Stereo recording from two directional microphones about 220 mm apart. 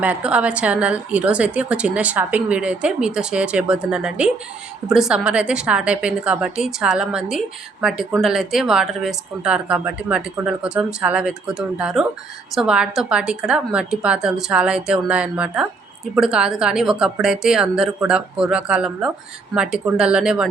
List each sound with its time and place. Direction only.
0.0 s a woman's voice: 5° right (ahead or behind)